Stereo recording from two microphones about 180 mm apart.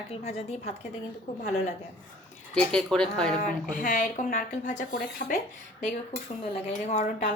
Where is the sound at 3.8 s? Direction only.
50° left (ahead or behind).